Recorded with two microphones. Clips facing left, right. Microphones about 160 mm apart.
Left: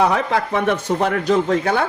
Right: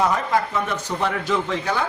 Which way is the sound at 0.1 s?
70° left (ahead or behind).